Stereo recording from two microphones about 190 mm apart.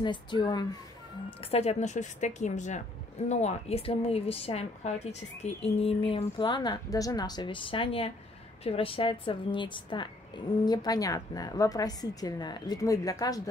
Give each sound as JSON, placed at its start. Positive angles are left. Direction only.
{"t": 0.0, "sound": "a woman's voice", "side_deg": 25}
{"t": 1.5, "sound": "a woman's voice", "side_deg": 35}